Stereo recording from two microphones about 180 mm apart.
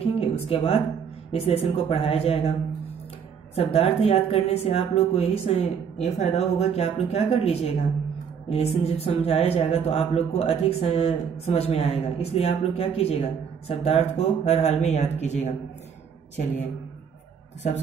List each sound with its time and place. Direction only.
0.0 s a sound: 35° left (ahead or behind)
1.3 s speech: 35° left (ahead or behind)
3.5 s speech: 35° left (ahead or behind)
16.3 s speech: 40° left (ahead or behind)